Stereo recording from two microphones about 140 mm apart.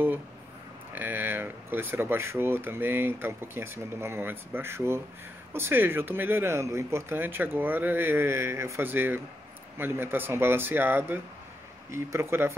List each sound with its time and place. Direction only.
0.9 s speech: 15° right (ahead or behind)